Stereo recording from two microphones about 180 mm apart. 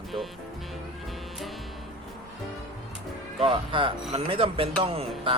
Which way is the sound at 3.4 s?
30° right (ahead or behind).